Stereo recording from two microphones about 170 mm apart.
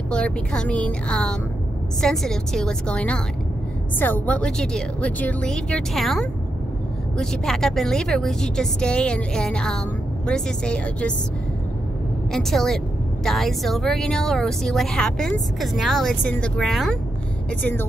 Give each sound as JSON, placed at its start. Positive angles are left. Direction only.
{"t": 0.1, "sound": "a woman's voice", "side_deg": 5}
{"t": 12.3, "sound": "a woman's voice", "side_deg": 0}